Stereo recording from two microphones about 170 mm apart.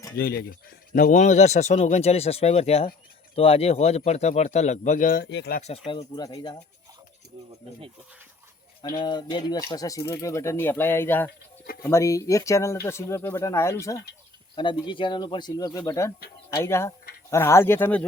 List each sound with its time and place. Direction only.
0.2 s speech: 65° left (ahead or behind)
0.9 s speech: 50° left (ahead or behind); by 5.5 s 80° left
5.5 s speech: 40° left (ahead or behind); by 6.6 s 20° left (ahead or behind)
9.0 s speech: 25° left (ahead or behind)
14.5 s speech: 30° left (ahead or behind); by 18.0 s 10° left (ahead or behind)